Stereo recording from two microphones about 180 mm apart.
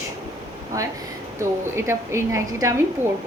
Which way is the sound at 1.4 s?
15° right (ahead or behind).